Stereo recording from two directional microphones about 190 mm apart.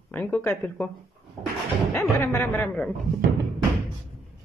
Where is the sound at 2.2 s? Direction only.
10° left (ahead or behind).